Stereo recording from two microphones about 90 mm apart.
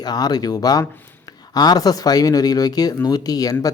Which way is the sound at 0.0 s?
50° left (ahead or behind).